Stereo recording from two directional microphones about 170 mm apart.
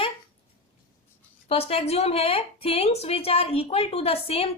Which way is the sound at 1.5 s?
35° left (ahead or behind).